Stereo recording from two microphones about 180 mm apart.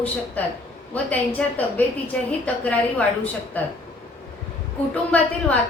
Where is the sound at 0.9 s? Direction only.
10° left (ahead or behind).